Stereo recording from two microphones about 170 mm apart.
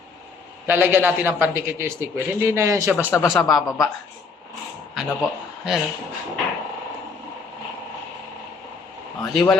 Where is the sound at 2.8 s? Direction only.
Centre (ahead or behind).